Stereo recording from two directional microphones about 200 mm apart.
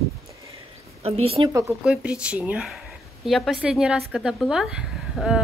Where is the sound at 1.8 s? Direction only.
5° right (ahead or behind).